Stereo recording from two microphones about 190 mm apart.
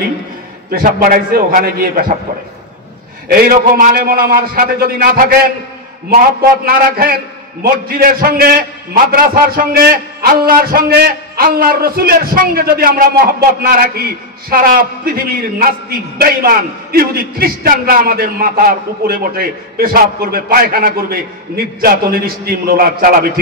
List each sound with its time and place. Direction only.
0.7 s a man's voice: 50° right (ahead or behind)
3.3 s a man's voice: 50° right (ahead or behind)